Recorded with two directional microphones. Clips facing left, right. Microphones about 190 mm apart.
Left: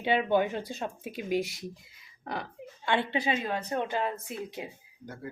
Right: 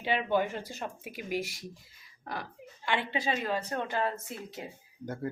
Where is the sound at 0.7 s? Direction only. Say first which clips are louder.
Left 3 dB; centre (ahead or behind).